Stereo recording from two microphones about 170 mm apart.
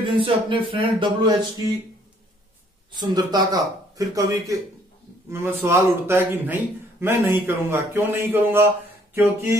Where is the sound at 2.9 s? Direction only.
25° right (ahead or behind).